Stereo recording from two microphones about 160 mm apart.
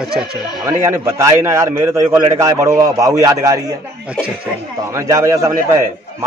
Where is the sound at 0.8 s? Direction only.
15° right (ahead or behind).